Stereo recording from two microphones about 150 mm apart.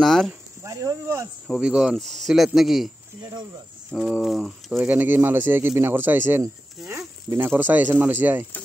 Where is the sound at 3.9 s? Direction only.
5° right (ahead or behind).